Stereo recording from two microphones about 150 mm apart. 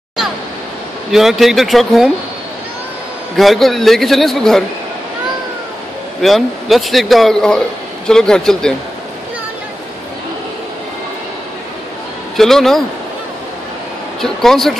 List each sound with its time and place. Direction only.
1.1 s a man's voice: centre (ahead or behind)
3.3 s a man's voice: centre (ahead or behind)
6.2 s a man's voice: centre (ahead or behind)
12.4 s a man's voice: centre (ahead or behind)
14.2 s a man's voice: centre (ahead or behind)